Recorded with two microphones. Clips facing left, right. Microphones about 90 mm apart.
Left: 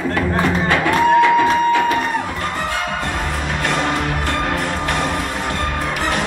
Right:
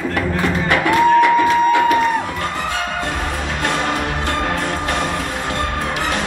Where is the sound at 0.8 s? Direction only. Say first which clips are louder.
Right 1 dB; 20° right (ahead or behind).